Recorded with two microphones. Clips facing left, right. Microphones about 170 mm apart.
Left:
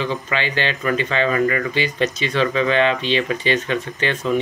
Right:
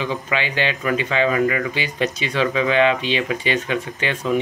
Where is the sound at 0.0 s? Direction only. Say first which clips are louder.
Left 1 dB; 10° right (ahead or behind).